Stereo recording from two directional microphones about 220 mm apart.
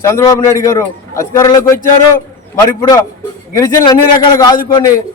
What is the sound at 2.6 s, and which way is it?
A man's voice, 15° left (ahead or behind).